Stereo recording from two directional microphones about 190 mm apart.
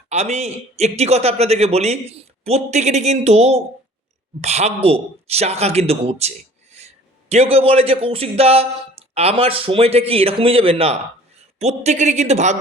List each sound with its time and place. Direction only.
0.1 s a man's voice: 35° right (ahead or behind)